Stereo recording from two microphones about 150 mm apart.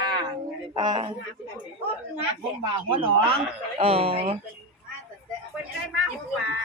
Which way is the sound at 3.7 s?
40° right (ahead or behind).